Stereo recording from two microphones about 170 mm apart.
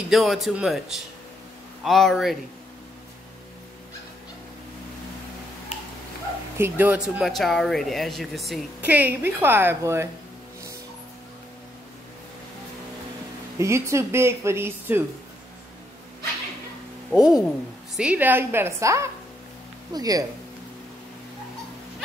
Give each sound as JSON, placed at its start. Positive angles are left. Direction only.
{"t": 0.1, "sound": "a woman's voice", "side_deg": 0}
{"t": 6.6, "sound": "speech", "side_deg": -10}
{"t": 7.2, "sound": "a woman's voice", "side_deg": 0}
{"t": 13.6, "sound": "speech", "side_deg": -15}
{"t": 17.1, "sound": "a woman's voice", "side_deg": -5}